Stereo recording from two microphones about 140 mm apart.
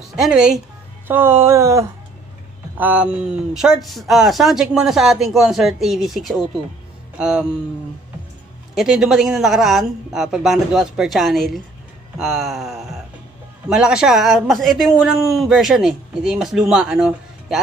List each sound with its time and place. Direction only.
0.1 s speech: 5° right (ahead or behind)
1.0 s speech: 15° right (ahead or behind)
2.8 s speech: 10° right (ahead or behind)
8.7 s speech: 5° right (ahead or behind)
12.2 s a sound: centre (ahead or behind)
13.7 s speech: 5° right (ahead or behind)